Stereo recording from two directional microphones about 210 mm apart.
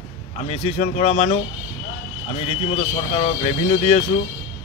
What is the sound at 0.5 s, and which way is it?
Speech, 30° left (ahead or behind).